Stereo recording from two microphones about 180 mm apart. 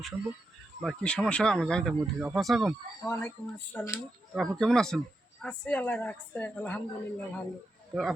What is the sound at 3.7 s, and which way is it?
Speech, 15° left (ahead or behind).